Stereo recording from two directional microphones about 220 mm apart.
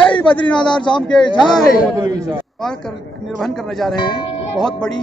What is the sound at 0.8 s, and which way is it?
Speech, 20° left (ahead or behind).